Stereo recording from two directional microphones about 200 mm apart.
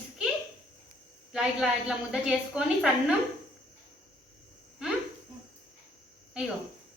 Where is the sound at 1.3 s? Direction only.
5° right (ahead or behind).